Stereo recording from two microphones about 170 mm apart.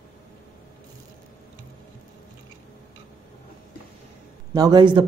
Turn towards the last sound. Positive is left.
turn(degrees=-25)  # may be behind; listen again after turning